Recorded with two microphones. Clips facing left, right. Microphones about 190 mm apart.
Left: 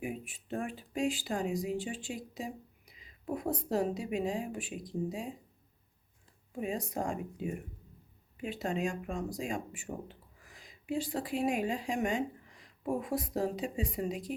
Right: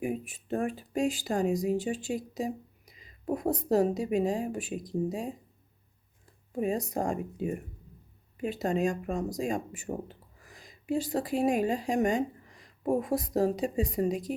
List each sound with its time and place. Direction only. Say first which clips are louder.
0.0 s speech: right 6 dB; 45° right (ahead or behind)
6.5 s speech: right 6 dB; 40° right (ahead or behind)